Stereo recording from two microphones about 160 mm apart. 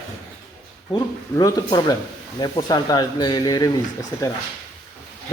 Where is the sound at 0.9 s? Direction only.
25° left (ahead or behind).